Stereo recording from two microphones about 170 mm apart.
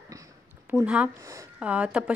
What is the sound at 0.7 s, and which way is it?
Speech, 10° right (ahead or behind).